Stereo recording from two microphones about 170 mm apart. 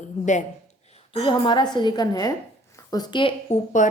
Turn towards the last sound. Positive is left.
turn(degrees=45)  # may be behind; listen again after turning